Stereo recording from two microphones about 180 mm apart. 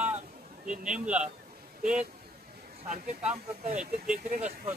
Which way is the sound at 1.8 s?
5° right (ahead or behind).